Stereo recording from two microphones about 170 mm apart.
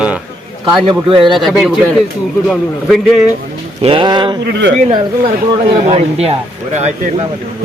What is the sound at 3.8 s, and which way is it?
Speech, 30° right (ahead or behind).